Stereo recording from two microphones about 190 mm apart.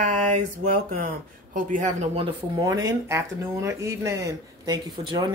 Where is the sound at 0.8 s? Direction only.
50° right (ahead or behind).